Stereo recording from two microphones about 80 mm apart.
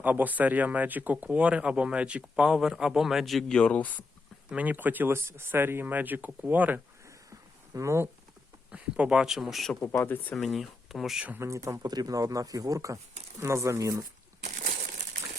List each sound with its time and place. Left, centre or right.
0.0 s speech: right; by 3.6 s centre
3.6 s speech: centre
4.4 s speech: centre
7.3 s a sound: right
8.7 s speech: centre
10.0 s speech: left
10.3 s speech: centre
11.3 s speech: right
11.9 s speech: right